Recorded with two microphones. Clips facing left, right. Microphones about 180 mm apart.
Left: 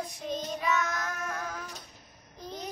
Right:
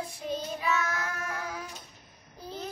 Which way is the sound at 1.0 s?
10° right (ahead or behind).